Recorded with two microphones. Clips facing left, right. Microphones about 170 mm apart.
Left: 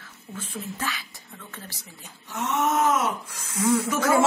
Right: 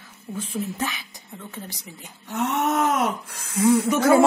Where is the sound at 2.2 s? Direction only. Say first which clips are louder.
Right 2 dB; 60° right (ahead or behind).